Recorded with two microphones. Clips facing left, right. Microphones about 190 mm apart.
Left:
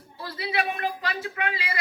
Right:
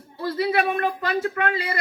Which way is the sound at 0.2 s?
50° right (ahead or behind).